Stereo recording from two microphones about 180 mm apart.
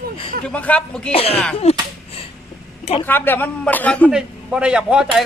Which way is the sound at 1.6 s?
35° left (ahead or behind).